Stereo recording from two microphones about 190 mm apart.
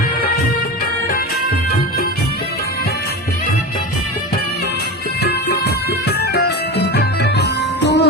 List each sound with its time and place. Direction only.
5.2 s music: 60° left (ahead or behind)